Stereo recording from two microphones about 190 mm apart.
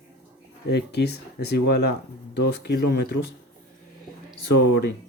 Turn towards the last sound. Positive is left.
turn(degrees=60)  # may be behind; listen again after turning